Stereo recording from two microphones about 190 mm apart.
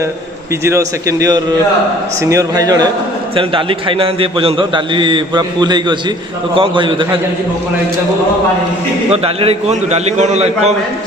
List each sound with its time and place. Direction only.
0.6 s a man's voice: 15° right (ahead or behind)
9.1 s a man's voice: 30° right (ahead or behind)